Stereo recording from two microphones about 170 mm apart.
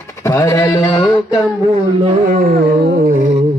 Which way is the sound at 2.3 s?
55° right (ahead or behind).